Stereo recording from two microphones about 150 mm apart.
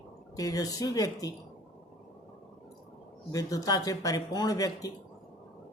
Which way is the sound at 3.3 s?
25° left (ahead or behind).